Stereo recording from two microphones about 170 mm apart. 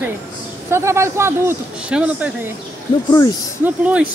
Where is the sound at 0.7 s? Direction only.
15° right (ahead or behind).